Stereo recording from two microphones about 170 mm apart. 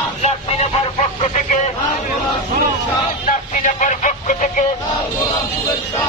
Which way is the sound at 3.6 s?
50° left (ahead or behind).